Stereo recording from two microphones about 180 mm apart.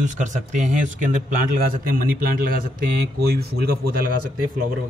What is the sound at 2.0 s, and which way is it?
Speech, 55° right (ahead or behind).